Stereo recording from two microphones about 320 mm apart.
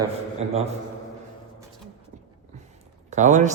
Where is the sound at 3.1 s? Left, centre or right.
Right.